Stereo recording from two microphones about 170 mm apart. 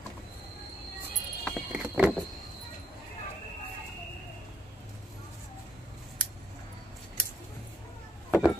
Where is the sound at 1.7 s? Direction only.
10° right (ahead or behind).